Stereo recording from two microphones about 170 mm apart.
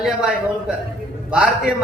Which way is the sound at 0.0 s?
Centre (ahead or behind).